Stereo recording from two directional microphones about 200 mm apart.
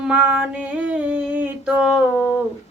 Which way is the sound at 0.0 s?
5° right (ahead or behind).